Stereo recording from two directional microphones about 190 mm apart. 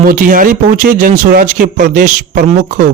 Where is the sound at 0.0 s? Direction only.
45° right (ahead or behind).